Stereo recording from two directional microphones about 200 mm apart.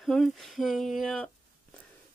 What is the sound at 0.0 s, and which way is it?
Speech, centre (ahead or behind).